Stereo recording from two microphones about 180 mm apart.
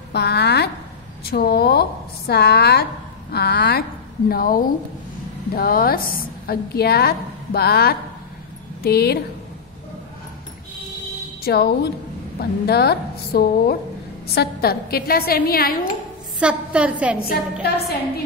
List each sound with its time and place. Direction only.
0.1 s a sound: 65° left (ahead or behind)
1.3 s a woman's voice: 60° left (ahead or behind)
11.4 s a woman's voice: 60° left (ahead or behind)
16.3 s a woman's voice: 5° right (ahead or behind)
17.2 s a woman's voice: 55° left (ahead or behind)